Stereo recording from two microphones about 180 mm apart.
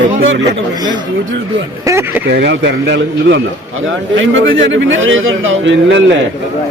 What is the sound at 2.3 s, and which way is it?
Speech, 75° right (ahead or behind).